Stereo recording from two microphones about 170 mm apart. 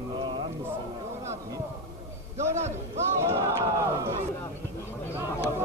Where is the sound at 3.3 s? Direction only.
15° right (ahead or behind).